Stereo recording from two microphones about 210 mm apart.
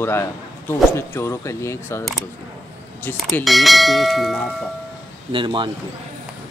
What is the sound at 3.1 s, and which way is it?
Bell, 5° left (ahead or behind).